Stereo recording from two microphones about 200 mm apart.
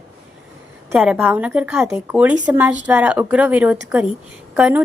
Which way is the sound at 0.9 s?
10° right (ahead or behind).